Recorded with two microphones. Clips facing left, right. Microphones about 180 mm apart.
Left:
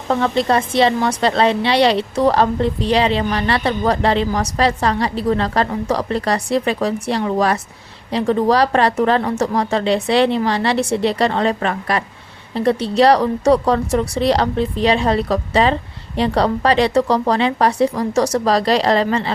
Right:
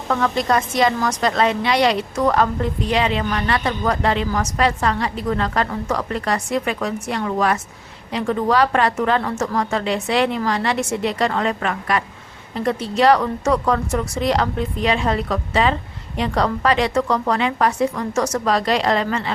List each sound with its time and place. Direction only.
0.1 s a woman's voice: 25° left (ahead or behind)